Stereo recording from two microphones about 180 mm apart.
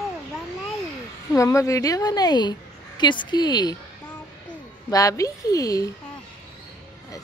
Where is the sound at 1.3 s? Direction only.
15° left (ahead or behind).